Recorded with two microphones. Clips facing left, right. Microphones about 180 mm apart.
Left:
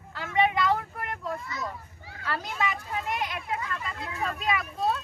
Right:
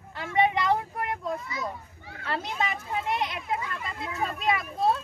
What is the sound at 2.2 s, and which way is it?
Speech, 25° right (ahead or behind).